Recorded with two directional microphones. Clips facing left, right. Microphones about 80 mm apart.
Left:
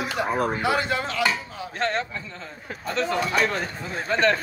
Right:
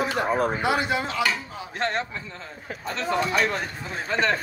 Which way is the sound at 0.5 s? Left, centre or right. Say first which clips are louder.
Even; right.